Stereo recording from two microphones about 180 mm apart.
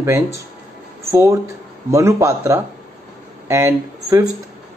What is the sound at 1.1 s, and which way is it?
Speech, 15° right (ahead or behind).